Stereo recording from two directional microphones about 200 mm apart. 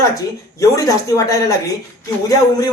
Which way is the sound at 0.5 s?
15° left (ahead or behind).